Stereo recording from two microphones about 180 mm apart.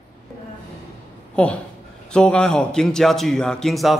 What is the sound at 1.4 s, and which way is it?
A man's voice, 5° left (ahead or behind).